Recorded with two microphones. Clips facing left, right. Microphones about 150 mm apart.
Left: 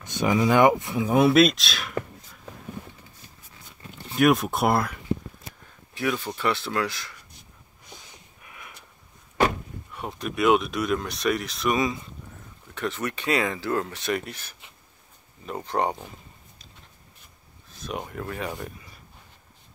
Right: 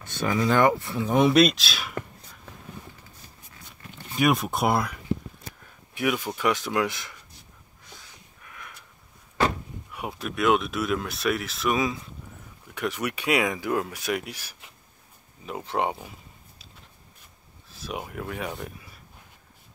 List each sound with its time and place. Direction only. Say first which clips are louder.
0.0 s speech: left 3 dB; 15° left (ahead or behind)
1.0 s speech: left 1 dB; 5° left (ahead or behind)
4.1 s speech: left 3 dB; centre (ahead or behind)
5.9 s speech: right 1 dB; 10° right (ahead or behind)
7.9 s snort: left 2 dB; 15° left (ahead or behind)
9.9 s speech: left 1 dB; 5° right (ahead or behind)
17.6 s speech: left 1 dB; 5° right (ahead or behind)